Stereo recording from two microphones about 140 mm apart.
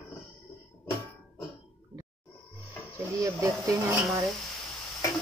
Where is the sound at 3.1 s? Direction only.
25° right (ahead or behind).